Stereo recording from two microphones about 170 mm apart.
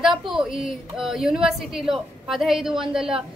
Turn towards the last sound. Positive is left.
turn(degrees=-5)  # may be behind; listen again after turning